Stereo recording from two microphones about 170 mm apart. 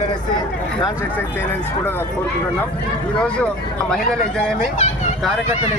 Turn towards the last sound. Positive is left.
turn(degrees=45)  # may be behind; listen again after turning